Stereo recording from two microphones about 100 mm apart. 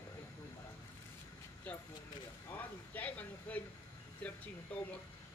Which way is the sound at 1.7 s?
15° left (ahead or behind).